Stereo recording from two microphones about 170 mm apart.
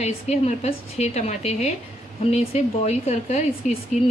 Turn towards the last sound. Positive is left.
turn(degrees=45)  # may be behind; listen again after turning